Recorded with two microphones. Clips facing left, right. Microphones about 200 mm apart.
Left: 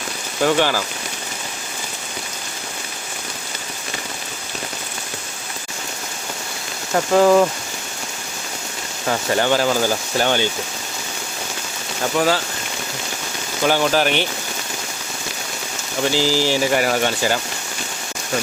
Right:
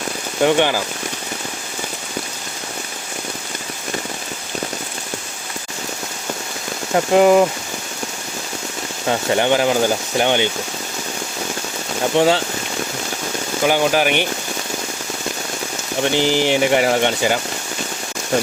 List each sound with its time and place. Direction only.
0.4 s speech: 20° right (ahead or behind)
6.9 s speech: 20° right (ahead or behind)
9.0 s speech: 20° right (ahead or behind)
12.1 s speech: 25° right (ahead or behind)
13.7 s speech: 15° right (ahead or behind)
16.1 s speech: 20° right (ahead or behind)